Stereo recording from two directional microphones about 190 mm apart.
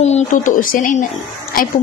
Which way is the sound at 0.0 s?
40° left (ahead or behind).